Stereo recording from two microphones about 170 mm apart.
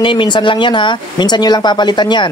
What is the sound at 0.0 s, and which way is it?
Speech, 30° left (ahead or behind).